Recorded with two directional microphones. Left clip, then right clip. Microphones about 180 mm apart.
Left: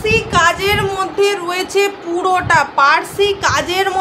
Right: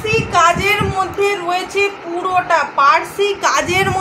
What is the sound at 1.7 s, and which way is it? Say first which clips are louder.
Speech: left 2 dB; 30° left (ahead or behind).